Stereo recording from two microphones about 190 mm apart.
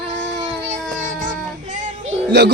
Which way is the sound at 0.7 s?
40° right (ahead or behind).